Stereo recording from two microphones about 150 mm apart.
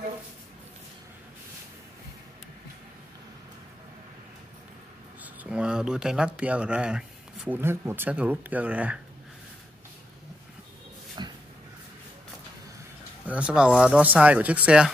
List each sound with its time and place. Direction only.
5.2 s speech: 10° right (ahead or behind)
11.2 s a sound: 30° right (ahead or behind)
13.3 s speech: 5° right (ahead or behind)